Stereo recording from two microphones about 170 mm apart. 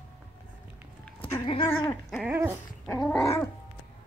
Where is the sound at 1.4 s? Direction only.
30° left (ahead or behind).